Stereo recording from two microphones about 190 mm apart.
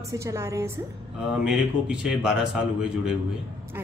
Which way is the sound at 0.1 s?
15° right (ahead or behind).